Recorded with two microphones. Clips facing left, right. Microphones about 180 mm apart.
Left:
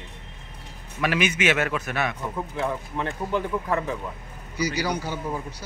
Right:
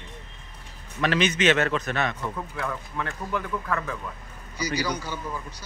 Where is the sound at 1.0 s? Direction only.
10° left (ahead or behind).